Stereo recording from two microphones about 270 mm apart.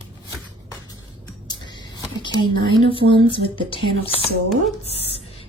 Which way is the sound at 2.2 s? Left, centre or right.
Centre.